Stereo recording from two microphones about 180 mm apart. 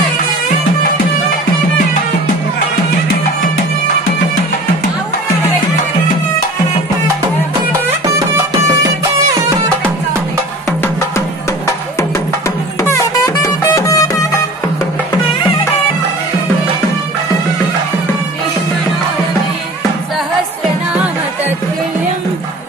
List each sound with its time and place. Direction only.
10.8 s music: 15° left (ahead or behind)
20.9 s music: 5° right (ahead or behind)